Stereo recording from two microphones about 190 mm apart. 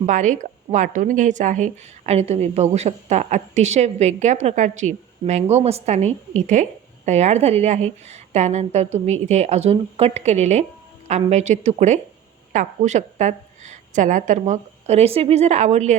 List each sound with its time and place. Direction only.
0.0 s speech: 40° right (ahead or behind)